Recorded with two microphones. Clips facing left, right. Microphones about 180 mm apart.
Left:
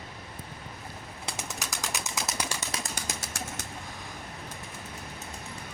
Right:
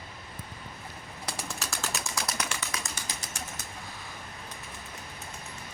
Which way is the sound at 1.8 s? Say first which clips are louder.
Even; 20° left (ahead or behind).